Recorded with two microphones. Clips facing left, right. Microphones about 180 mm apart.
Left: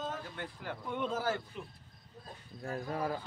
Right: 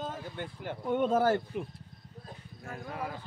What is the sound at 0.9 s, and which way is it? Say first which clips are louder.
Speech: right 9 dB; 50° right (ahead or behind).